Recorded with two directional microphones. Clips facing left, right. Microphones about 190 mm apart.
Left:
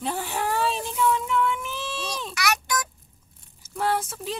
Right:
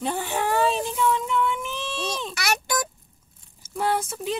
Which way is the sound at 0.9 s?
Centre (ahead or behind).